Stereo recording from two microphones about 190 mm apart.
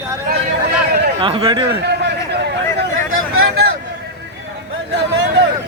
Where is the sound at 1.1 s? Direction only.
30° right (ahead or behind).